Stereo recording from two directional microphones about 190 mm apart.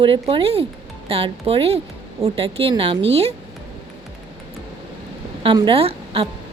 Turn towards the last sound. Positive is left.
turn(degrees=-30)  # may be behind; listen again after turning